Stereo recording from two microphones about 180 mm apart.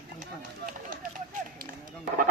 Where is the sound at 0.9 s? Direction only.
50° right (ahead or behind).